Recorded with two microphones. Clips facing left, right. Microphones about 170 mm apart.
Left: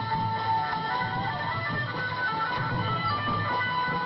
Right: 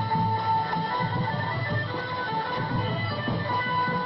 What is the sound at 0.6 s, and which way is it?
Music, 35° right (ahead or behind).